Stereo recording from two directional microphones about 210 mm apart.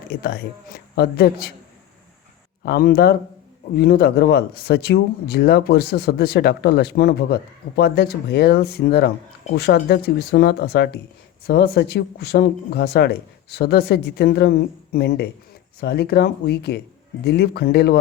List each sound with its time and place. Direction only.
0.2 s speech: 50° left (ahead or behind)
2.6 s speech: 45° left (ahead or behind)